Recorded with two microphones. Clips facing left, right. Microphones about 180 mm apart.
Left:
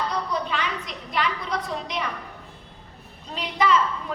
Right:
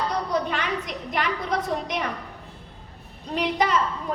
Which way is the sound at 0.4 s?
55° right (ahead or behind).